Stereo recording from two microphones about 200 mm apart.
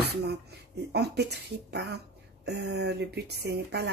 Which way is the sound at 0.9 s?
55° right (ahead or behind).